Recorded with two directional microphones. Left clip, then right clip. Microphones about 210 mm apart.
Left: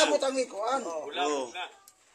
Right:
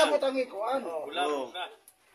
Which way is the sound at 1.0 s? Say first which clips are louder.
Even; 10° right (ahead or behind).